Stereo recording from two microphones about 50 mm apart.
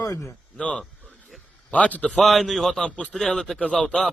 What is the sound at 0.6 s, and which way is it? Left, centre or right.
A man's voice, left.